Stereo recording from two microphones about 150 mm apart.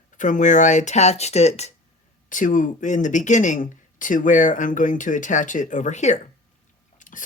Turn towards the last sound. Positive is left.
turn(degrees=60)  # may be behind; listen again after turning